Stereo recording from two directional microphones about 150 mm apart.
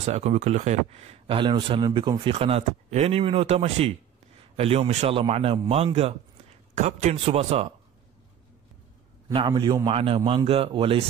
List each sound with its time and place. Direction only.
0.0 s speech: 50° right (ahead or behind)
9.5 s speech: 25° right (ahead or behind)